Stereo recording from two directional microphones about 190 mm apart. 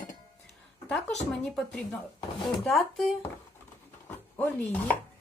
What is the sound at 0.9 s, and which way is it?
A woman's voice, 5° left (ahead or behind).